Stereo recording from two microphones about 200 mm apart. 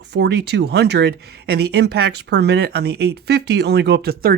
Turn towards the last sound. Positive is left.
turn(degrees=-50)  # may be behind; listen again after turning